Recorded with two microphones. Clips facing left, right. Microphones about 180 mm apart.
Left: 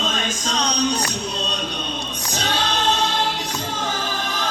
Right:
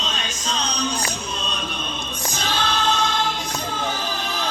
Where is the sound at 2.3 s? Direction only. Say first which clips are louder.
Left 2 dB; 35° left (ahead or behind).